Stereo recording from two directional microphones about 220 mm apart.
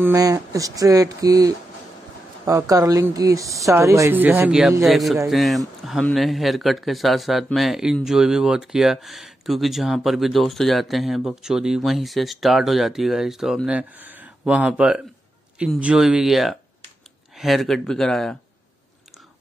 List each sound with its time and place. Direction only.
0.0 s a woman's voice: 15° right (ahead or behind); by 18.4 s centre (ahead or behind)